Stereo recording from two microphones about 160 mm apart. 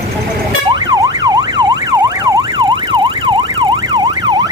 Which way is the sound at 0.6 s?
25° right (ahead or behind).